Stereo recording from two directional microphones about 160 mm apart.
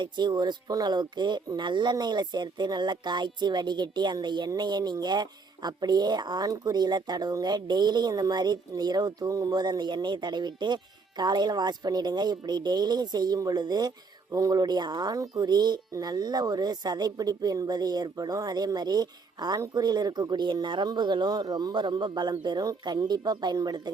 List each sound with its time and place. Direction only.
0.0 s a woman's voice: 30° right (ahead or behind)